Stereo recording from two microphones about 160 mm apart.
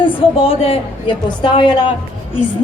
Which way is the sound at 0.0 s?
35° left (ahead or behind).